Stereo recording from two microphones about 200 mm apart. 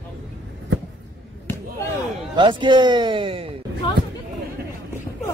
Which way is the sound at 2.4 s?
25° right (ahead or behind).